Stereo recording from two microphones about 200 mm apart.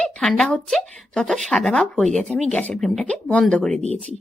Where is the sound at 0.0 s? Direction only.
5° left (ahead or behind).